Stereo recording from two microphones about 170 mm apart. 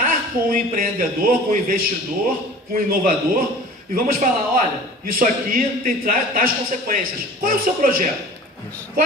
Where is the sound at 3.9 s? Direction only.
55° right (ahead or behind).